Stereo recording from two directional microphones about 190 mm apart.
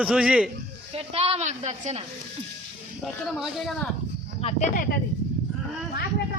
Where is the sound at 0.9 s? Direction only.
30° right (ahead or behind).